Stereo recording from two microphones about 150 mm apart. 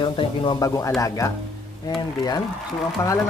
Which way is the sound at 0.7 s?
20° left (ahead or behind).